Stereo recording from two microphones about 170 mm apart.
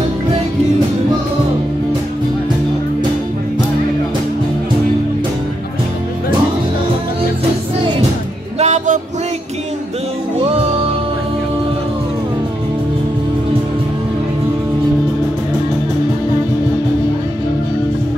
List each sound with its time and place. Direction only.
8.5 s music: 45° right (ahead or behind)